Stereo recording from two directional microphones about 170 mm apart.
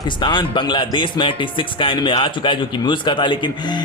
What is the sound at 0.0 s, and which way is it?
Speech, 30° left (ahead or behind).